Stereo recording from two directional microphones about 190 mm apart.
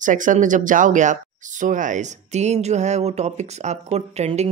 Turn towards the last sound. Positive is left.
turn(degrees=-35)  # may be behind; listen again after turning